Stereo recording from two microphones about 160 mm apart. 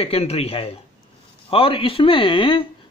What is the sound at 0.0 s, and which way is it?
Speech, 40° left (ahead or behind).